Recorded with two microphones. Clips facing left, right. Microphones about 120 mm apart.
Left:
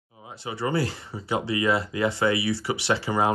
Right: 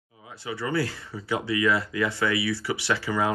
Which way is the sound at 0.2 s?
25° left (ahead or behind).